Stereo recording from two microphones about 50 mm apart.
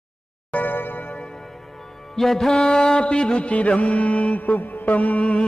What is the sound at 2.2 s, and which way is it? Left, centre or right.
Mantra, centre.